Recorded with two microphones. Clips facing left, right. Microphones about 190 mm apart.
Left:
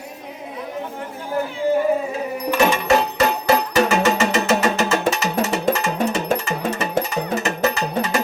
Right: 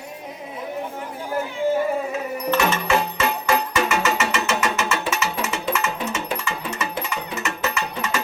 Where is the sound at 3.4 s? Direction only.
35° left (ahead or behind).